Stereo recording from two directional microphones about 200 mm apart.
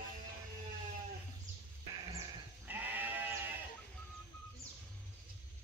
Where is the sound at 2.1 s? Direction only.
10° right (ahead or behind).